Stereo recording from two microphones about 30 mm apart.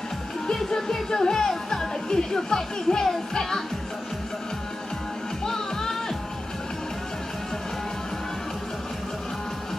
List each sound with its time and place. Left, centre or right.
0.7 s music: centre
1.5 s speech: centre
5.4 s music: centre